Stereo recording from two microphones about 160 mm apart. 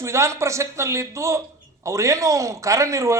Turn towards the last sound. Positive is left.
turn(degrees=-20)  # may be behind; listen again after turning